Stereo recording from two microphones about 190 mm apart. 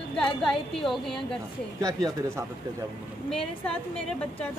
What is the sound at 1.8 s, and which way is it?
Speech, 15° right (ahead or behind).